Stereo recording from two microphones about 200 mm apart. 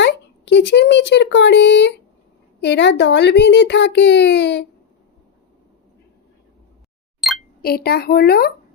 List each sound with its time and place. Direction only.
0.0 s a woman's voice: 60° left (ahead or behind)
7.2 s a sound: centre (ahead or behind)
7.6 s a woman's voice: 50° left (ahead or behind)